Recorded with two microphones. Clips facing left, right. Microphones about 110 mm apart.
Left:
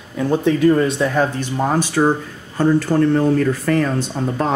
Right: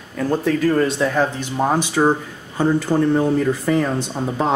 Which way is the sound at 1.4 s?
15° right (ahead or behind).